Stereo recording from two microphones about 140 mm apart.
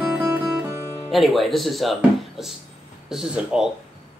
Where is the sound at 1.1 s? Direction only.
Centre (ahead or behind).